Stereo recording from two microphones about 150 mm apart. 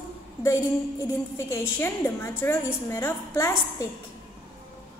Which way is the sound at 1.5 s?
15° left (ahead or behind).